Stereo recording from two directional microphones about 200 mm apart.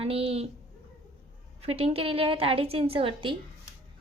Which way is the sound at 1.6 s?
30° right (ahead or behind).